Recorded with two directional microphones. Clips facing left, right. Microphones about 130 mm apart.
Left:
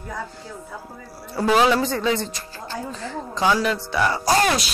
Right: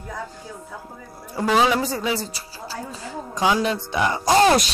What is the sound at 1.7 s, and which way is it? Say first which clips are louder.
Speech: left 2 dB; 10° right (ahead or behind).